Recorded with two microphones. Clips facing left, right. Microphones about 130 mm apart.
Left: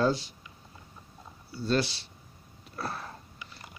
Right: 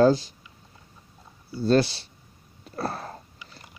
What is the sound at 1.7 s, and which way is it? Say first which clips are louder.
Speech: right 7 dB; 40° right (ahead or behind).